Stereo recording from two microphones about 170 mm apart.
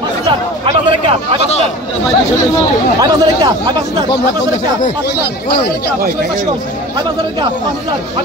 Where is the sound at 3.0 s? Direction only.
25° right (ahead or behind).